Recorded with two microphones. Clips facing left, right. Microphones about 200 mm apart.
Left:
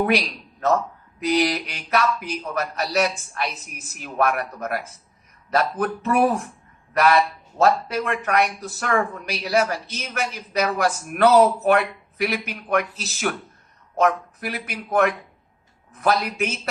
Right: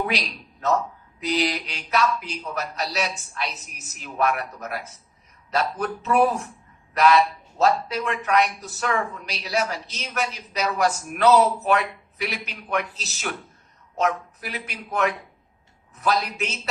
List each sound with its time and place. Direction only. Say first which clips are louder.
1.3 s speech: left 4 dB; 55° left (ahead or behind)